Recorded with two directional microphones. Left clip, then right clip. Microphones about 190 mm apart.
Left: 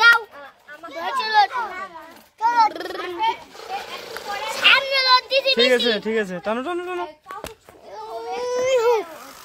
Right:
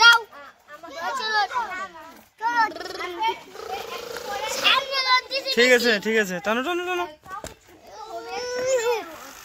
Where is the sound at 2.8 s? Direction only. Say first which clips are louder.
Left 3 dB; 25° left (ahead or behind).